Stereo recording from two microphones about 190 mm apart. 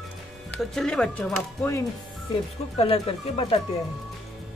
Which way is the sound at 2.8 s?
30° left (ahead or behind).